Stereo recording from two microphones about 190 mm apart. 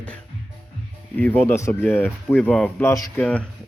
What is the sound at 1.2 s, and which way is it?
Speech, 10° left (ahead or behind).